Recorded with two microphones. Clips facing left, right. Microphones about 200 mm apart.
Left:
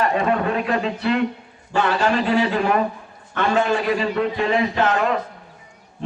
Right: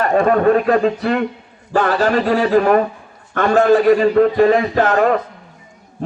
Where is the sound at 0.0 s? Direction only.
45° right (ahead or behind).